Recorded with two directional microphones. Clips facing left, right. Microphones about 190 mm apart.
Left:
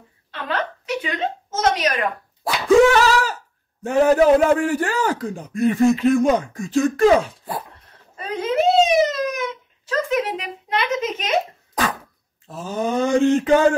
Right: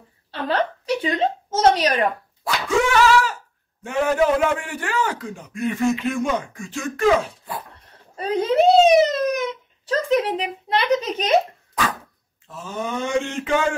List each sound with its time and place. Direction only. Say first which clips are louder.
0.3 s a woman's voice: right 3 dB; 35° right (ahead or behind)
2.4 s a sound: left 8 dB; 40° left (ahead or behind)
3.8 s a man's voice: left 5 dB; 40° left (ahead or behind)
8.2 s speech: right 3 dB; 35° right (ahead or behind)
12.4 s a man's voice: left 5 dB; 35° left (ahead or behind)